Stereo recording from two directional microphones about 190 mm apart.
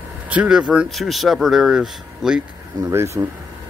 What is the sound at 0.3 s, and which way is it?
Speech, 5° right (ahead or behind).